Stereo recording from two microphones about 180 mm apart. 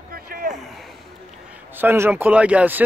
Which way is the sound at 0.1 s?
50° right (ahead or behind).